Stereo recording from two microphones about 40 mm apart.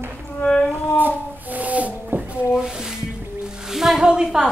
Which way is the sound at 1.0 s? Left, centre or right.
Right.